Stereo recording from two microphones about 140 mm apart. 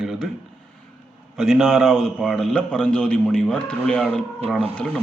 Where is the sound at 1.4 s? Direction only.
Centre (ahead or behind).